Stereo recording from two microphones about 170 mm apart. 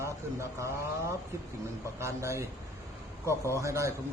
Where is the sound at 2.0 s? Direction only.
15° right (ahead or behind).